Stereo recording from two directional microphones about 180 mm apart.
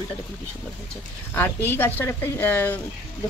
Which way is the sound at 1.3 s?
10° left (ahead or behind).